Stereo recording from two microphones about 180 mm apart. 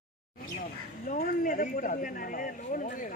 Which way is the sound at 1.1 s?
50° left (ahead or behind).